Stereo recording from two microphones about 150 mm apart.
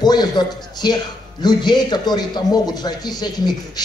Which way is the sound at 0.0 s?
30° left (ahead or behind).